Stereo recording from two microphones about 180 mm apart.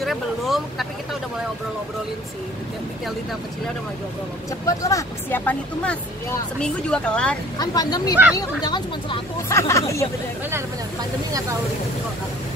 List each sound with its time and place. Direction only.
0.0 s vehicle: centre (ahead or behind)
4.6 s speech: 20° left (ahead or behind)
7.5 s speech: 20° left (ahead or behind)